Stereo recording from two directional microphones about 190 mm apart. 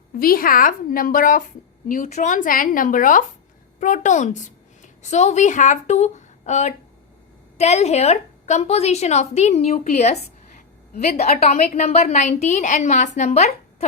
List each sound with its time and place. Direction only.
0.2 s a woman's voice: 50° left (ahead or behind)
11.2 s a woman's voice: 35° left (ahead or behind)